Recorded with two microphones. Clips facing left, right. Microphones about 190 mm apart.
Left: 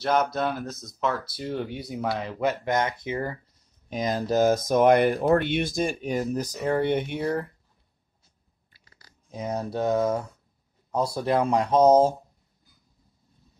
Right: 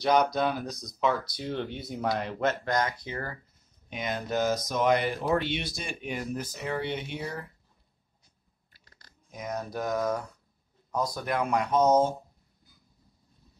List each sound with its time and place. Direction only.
0.0 s speech: 5° left (ahead or behind)
2.4 s speech: 20° left (ahead or behind)
3.9 s speech: 40° left (ahead or behind)
4.5 s speech: 50° left (ahead or behind)
8.8 s a sound: 5° left (ahead or behind)
9.3 s speech: 30° left (ahead or behind)